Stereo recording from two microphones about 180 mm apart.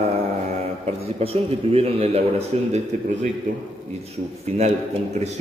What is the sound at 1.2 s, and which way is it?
A man's voice, 35° right (ahead or behind).